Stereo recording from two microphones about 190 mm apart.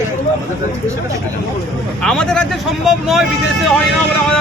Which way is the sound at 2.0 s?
5° left (ahead or behind).